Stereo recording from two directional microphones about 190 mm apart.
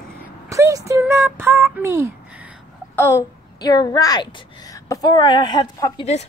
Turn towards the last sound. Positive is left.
turn(degrees=25)  # may be behind; listen again after turning